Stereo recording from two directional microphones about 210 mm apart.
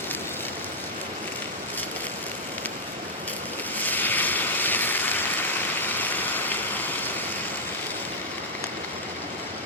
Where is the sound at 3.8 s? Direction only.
10° left (ahead or behind).